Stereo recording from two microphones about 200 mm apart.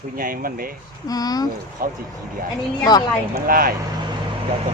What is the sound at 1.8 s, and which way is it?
Speech, 45° right (ahead or behind).